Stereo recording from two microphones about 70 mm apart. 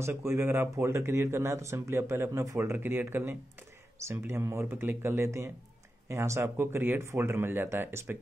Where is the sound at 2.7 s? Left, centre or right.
Right.